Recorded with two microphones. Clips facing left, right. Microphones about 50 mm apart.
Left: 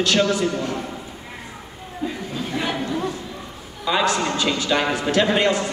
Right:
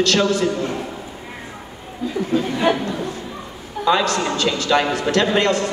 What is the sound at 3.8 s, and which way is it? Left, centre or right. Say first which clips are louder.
A man's voice: right 2 dB; centre.